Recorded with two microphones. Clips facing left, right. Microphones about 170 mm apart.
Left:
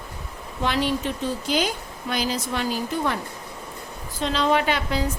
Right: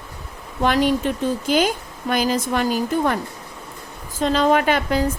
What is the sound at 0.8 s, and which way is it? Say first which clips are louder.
A woman's voice: right 5 dB; 50° right (ahead or behind).